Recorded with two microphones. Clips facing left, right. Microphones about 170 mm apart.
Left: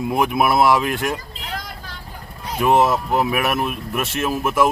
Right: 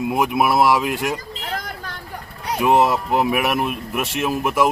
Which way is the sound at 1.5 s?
55° right (ahead or behind).